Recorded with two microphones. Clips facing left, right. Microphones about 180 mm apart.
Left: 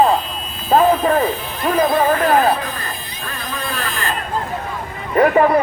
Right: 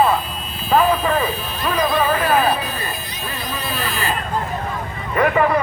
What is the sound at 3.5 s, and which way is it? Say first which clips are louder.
Vehicle: left 1 dB; 5° right (ahead or behind).